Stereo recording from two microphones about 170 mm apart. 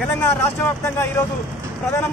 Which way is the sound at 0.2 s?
15° left (ahead or behind).